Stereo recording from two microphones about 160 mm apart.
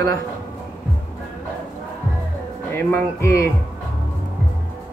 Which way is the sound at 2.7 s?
15° left (ahead or behind).